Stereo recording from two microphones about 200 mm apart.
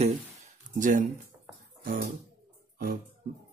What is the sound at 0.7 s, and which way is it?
Speech, 40° right (ahead or behind).